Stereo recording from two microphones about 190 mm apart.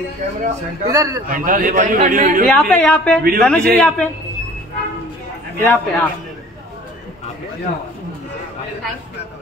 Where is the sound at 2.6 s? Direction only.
5° left (ahead or behind).